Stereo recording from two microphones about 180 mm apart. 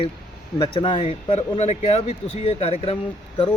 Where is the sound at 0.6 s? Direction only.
25° left (ahead or behind).